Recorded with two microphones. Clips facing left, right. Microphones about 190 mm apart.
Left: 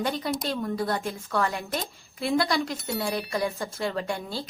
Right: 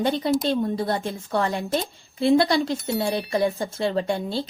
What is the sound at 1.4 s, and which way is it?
A woman's voice, 20° right (ahead or behind).